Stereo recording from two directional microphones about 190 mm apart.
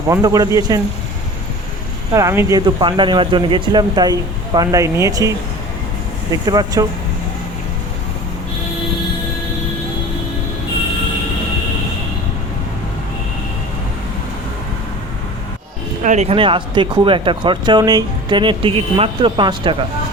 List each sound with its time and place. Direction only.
0.1 s speech: 15° right (ahead or behind)
2.1 s speech: 15° right (ahead or behind)
6.3 s speech: 20° right (ahead or behind)
16.0 s speech: 35° right (ahead or behind)